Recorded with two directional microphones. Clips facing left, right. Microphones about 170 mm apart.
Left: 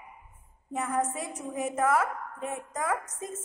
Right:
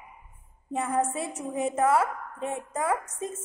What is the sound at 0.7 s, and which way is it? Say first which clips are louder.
A woman's voice: right 3 dB; 30° right (ahead or behind).